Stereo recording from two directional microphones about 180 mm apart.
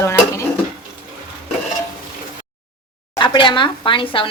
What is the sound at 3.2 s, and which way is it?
Speech, 25° left (ahead or behind).